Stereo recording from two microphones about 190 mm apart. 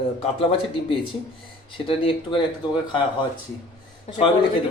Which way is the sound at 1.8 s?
30° left (ahead or behind).